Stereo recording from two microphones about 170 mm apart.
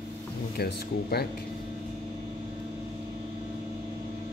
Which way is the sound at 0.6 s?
70° left (ahead or behind).